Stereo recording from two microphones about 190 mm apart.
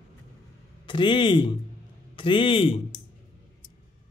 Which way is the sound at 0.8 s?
25° left (ahead or behind).